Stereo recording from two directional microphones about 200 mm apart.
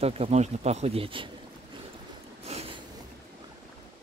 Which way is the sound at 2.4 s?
30° right (ahead or behind).